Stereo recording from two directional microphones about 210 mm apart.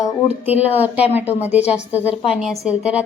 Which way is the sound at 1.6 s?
30° left (ahead or behind).